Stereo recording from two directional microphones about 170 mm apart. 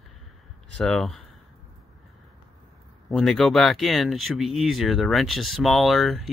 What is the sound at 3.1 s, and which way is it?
Speech, centre (ahead or behind).